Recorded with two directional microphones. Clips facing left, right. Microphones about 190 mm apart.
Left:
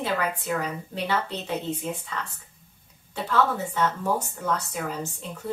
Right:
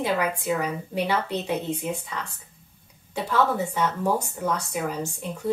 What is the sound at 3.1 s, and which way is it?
Speech, 15° right (ahead or behind).